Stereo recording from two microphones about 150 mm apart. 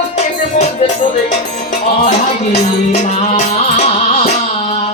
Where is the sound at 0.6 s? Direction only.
50° left (ahead or behind).